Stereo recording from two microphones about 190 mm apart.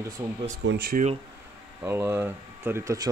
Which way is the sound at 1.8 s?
15° right (ahead or behind).